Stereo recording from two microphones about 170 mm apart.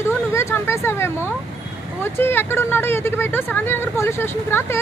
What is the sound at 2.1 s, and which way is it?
Speech, 15° left (ahead or behind).